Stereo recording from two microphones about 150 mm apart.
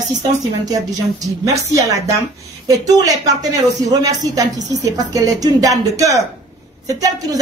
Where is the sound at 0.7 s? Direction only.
25° right (ahead or behind).